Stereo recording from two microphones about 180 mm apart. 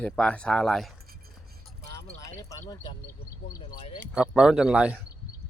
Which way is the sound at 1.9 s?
15° left (ahead or behind).